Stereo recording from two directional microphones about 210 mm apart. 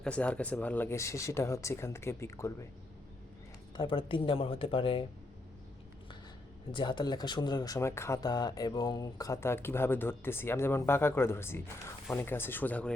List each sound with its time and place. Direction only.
0.0 s speech: 5° left (ahead or behind)
3.8 s speech: 25° left (ahead or behind)
6.7 s speech: 20° left (ahead or behind)